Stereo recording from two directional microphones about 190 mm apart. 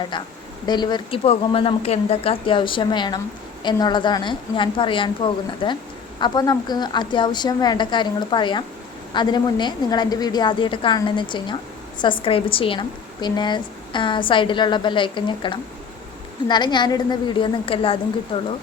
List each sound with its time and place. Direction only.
0.1 s a woman's voice: 25° left (ahead or behind)